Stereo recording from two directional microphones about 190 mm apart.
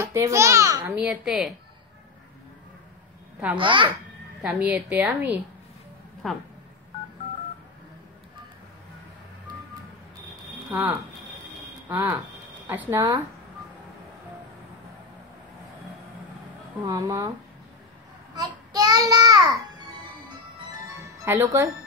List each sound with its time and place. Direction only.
0.0 s a woman's voice: 15° right (ahead or behind)
0.9 s a woman's voice: 5° right (ahead or behind)
3.5 s a child's voice: 25° right (ahead or behind)
4.4 s a woman's voice: 5° right (ahead or behind)
6.2 s a woman's voice: 5° left (ahead or behind)
10.7 s a woman's voice: 10° right (ahead or behind)
16.8 s a woman's voice: 15° right (ahead or behind)
18.3 s child singing: 20° right (ahead or behind)
21.2 s a woman's voice: 15° right (ahead or behind)